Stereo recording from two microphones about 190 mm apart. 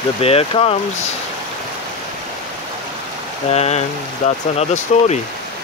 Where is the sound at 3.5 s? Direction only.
35° left (ahead or behind).